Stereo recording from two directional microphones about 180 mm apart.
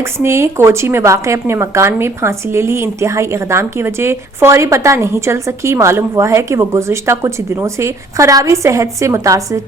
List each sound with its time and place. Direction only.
0.0 s speech: 15° right (ahead or behind)